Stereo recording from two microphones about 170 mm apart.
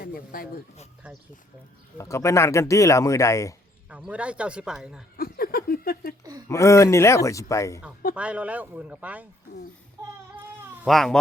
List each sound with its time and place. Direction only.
0.0 s speech: 60° left (ahead or behind)
2.0 s speech: 15° left (ahead or behind)
3.8 s a man's voice: 5° right (ahead or behind)
5.1 s a sound: 60° left (ahead or behind)
6.5 s speech: 15° left (ahead or behind)
8.1 s a man's voice: 5° right (ahead or behind)
10.8 s speech: centre (ahead or behind)